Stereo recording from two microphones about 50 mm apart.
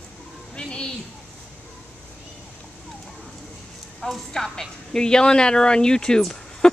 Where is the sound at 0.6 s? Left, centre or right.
Centre.